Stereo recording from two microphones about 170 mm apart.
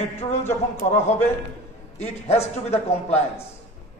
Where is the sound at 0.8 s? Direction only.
40° left (ahead or behind).